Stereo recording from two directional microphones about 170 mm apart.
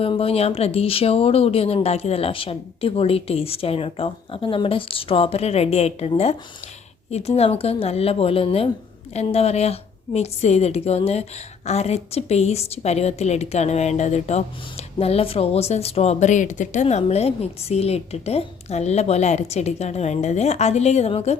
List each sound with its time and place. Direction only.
0.0 s a woman's voice: 35° left (ahead or behind)